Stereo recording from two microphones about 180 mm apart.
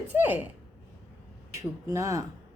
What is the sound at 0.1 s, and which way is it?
Speech, 10° right (ahead or behind).